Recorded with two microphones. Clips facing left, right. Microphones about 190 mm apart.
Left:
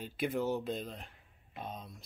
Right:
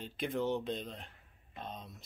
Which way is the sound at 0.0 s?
5° left (ahead or behind).